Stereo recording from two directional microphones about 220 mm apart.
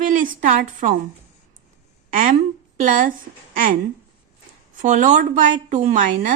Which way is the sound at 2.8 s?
40° right (ahead or behind).